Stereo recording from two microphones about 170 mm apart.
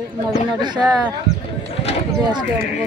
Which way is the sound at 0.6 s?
25° right (ahead or behind).